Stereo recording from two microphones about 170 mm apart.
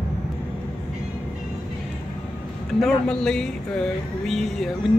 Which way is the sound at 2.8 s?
5° left (ahead or behind).